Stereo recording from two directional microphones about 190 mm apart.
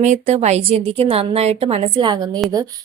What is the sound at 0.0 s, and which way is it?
A woman's voice, 35° right (ahead or behind).